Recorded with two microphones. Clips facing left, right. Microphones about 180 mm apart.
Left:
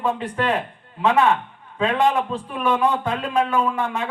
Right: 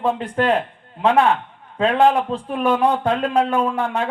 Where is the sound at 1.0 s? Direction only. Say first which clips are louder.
Right 2 dB; 65° right (ahead or behind).